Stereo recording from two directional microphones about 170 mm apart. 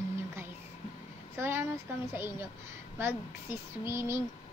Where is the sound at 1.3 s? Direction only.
15° right (ahead or behind).